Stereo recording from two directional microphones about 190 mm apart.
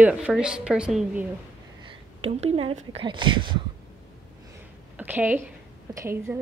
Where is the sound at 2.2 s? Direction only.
30° right (ahead or behind).